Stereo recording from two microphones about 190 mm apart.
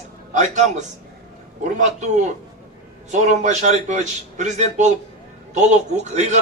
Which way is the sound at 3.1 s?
40° right (ahead or behind).